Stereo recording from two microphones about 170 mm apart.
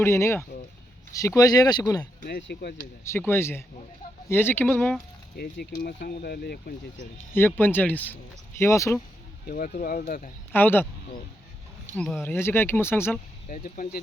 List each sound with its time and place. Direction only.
0.0 s speech: 15° left (ahead or behind)
2.2 s speech: 70° left (ahead or behind)
3.0 s speech: 15° left (ahead or behind)
5.4 s speech: 65° left (ahead or behind)
7.3 s speech: 10° left (ahead or behind)
9.5 s speech: 60° left (ahead or behind)
10.5 s speech: 10° left (ahead or behind)
11.9 s speech: 5° left (ahead or behind)
13.5 s speech: 55° left (ahead or behind)